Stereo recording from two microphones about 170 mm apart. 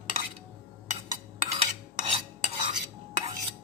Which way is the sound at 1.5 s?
40° right (ahead or behind).